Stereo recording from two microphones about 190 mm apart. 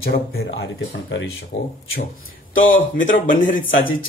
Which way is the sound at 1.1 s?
80° left.